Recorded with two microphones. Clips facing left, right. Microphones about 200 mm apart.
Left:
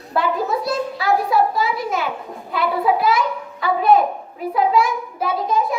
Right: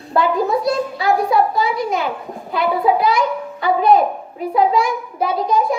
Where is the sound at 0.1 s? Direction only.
Centre (ahead or behind).